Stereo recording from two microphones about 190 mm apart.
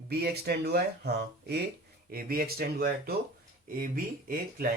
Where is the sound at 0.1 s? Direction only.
55° right (ahead or behind).